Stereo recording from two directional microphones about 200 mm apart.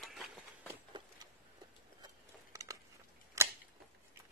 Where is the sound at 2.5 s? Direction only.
15° right (ahead or behind).